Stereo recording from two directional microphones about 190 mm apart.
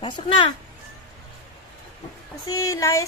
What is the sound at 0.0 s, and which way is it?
Speech, 25° left (ahead or behind).